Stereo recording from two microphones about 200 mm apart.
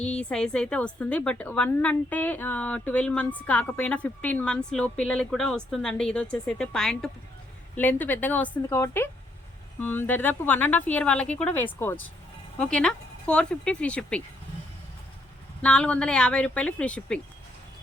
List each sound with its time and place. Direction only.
0.0 s speech: 5° left (ahead or behind)
15.6 s speech: 5° left (ahead or behind)